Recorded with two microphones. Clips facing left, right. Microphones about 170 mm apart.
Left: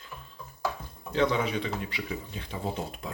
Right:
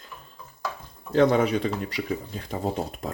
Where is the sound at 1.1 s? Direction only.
50° right (ahead or behind).